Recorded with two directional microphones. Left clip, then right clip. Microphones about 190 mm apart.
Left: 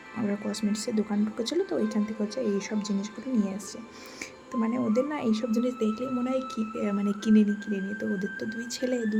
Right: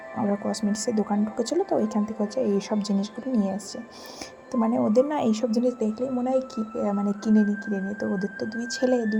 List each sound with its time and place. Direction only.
0.4 s a woman's voice: 15° right (ahead or behind)
4.6 s a woman's voice: 20° right (ahead or behind)